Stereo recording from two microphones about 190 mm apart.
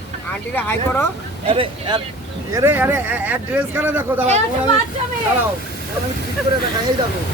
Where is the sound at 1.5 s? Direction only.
25° right (ahead or behind).